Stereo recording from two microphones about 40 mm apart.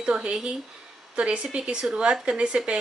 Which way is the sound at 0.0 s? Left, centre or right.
Right.